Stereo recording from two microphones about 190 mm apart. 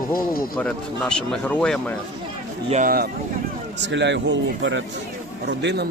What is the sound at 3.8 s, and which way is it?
A man's voice, 70° right (ahead or behind).